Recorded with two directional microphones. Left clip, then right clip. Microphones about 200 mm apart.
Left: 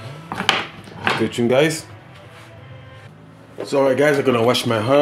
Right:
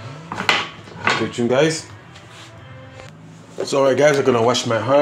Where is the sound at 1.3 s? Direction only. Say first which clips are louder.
Left 3 dB; 30° left (ahead or behind).